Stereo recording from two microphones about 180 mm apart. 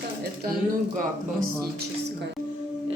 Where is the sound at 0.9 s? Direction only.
45° right (ahead or behind).